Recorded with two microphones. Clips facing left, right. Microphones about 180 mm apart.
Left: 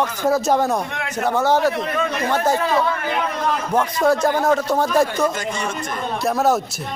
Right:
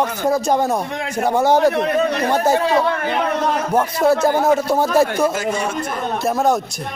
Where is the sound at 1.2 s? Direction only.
15° right (ahead or behind).